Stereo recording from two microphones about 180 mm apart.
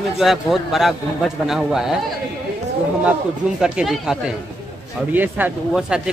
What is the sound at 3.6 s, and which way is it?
Speech, 5° right (ahead or behind).